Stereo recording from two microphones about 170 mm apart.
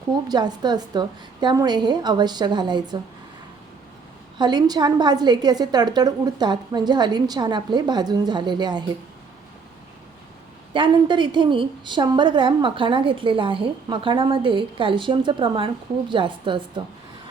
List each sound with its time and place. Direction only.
0.3 s a woman's voice: 25° right (ahead or behind)
4.4 s a woman's voice: 25° right (ahead or behind)
10.8 s a woman's voice: 30° right (ahead or behind)